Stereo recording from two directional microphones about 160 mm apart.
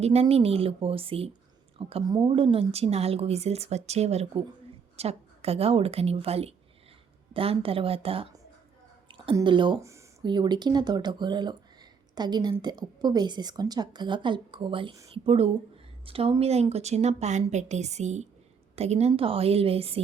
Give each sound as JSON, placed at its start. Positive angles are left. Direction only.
{"t": 0.0, "sound": "a woman's voice", "side_deg": -40}
{"t": 9.0, "sound": "a sound", "side_deg": -30}
{"t": 9.3, "sound": "a woman's voice", "side_deg": -30}
{"t": 9.8, "sound": "a woman's voice", "side_deg": -20}